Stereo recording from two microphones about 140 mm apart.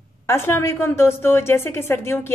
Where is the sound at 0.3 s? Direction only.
20° left (ahead or behind).